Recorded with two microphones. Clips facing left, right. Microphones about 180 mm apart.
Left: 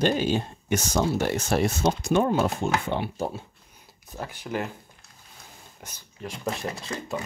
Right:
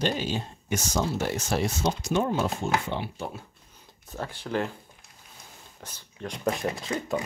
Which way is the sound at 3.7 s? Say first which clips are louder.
Right 1 dB; 15° left (ahead or behind).